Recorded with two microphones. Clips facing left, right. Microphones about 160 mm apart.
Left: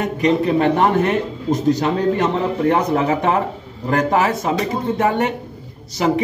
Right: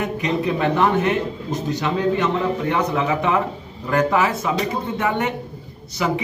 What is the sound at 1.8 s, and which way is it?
A man's voice, 40° left (ahead or behind).